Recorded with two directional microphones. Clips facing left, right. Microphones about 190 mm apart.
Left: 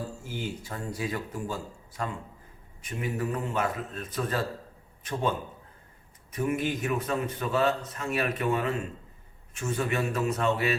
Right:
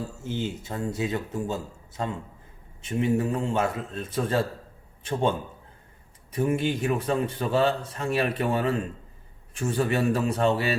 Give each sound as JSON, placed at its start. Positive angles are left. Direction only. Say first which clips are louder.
{"t": 0.2, "sound": "speech", "louder": "right 5 dB", "side_deg": -25}
{"t": 6.3, "sound": "a man's voice", "louder": "right 3 dB", "side_deg": -30}